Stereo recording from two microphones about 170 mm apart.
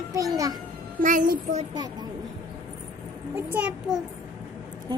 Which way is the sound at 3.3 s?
10° right (ahead or behind).